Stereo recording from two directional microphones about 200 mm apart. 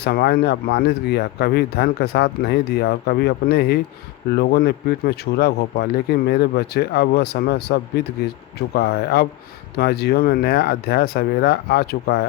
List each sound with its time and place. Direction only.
0.0 s speech: 50° left (ahead or behind)